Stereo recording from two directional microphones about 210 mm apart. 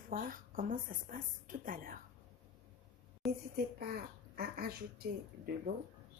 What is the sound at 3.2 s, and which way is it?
Speech, centre (ahead or behind).